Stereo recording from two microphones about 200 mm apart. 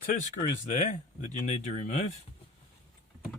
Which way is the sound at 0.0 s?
40° left (ahead or behind).